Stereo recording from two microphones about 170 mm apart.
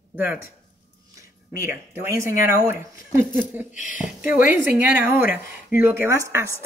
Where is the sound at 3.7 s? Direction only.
50° left (ahead or behind).